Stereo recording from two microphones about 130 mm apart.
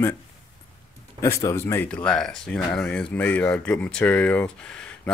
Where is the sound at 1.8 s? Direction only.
5° left (ahead or behind).